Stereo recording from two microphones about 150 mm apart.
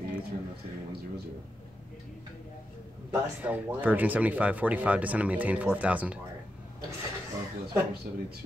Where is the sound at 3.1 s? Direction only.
10° right (ahead or behind).